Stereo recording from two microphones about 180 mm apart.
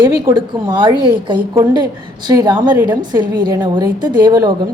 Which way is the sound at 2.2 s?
20° right (ahead or behind).